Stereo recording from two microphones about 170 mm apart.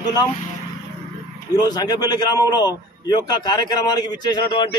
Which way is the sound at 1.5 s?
20° left (ahead or behind).